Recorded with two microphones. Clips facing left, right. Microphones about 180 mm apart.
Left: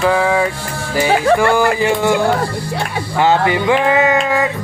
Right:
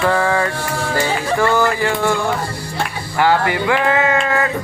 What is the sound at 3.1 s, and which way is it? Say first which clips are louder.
Music: left 2 dB; 20° left (ahead or behind).